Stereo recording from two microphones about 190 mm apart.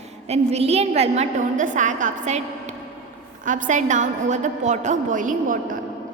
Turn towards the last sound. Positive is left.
turn(degrees=-45)  # may be behind; listen again after turning